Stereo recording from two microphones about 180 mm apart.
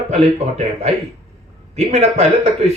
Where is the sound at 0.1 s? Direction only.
35° right (ahead or behind).